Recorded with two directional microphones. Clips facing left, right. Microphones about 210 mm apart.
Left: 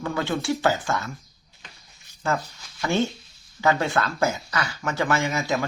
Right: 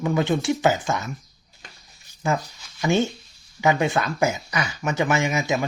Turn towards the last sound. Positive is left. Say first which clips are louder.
# right 2 dB
turn(degrees=-15)  # may be behind; listen again after turning